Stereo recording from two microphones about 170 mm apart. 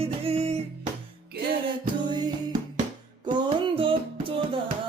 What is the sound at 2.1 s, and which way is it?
Music, 25° right (ahead or behind).